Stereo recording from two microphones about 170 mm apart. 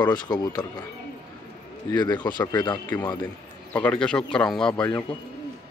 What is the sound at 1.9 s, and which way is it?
Speech, 25° left (ahead or behind).